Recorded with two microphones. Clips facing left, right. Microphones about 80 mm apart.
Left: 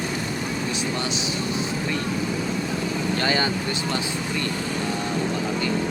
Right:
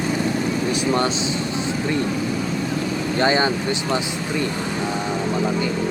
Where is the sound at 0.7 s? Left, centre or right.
Right.